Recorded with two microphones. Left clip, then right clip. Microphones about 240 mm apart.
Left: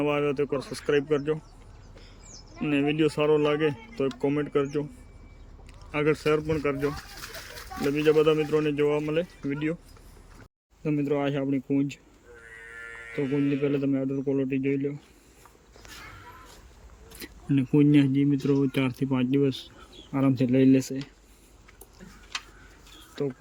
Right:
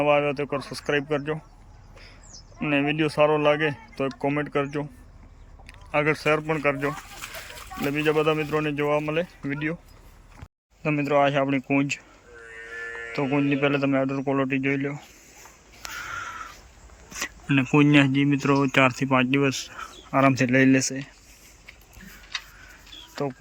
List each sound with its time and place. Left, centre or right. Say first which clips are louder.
0.0 s speech: right 4 dB; centre
2.6 s speech: right 1 dB; centre
5.9 s speech: right 2 dB; centre
10.8 s speech: right 6 dB; centre
13.6 s speech: right 4 dB; centre
17.6 s speech: right 3 dB; centre
18.3 s speech: right 3 dB; right
18.7 s speech: right 9 dB; centre
23.2 s speech: right 1 dB; centre